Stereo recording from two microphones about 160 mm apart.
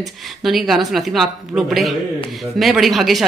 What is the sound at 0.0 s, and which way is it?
A woman's voice, centre (ahead or behind).